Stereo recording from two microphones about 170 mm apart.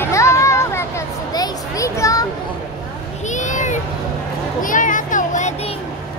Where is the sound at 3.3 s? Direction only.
45° left (ahead or behind).